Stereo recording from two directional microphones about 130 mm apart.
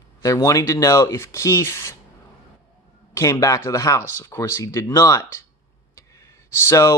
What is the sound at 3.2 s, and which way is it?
Speech, 25° left (ahead or behind).